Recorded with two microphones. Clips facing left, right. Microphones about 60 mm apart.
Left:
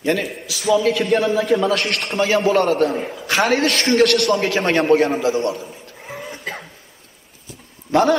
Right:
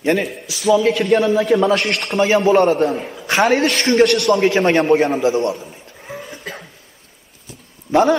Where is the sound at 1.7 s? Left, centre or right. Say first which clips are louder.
Right 3 dB; right.